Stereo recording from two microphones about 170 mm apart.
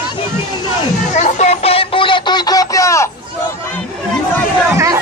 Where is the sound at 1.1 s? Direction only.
40° left (ahead or behind); by 3.1 s 15° left (ahead or behind).